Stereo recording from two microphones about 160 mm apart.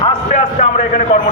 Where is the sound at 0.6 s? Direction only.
50° left (ahead or behind).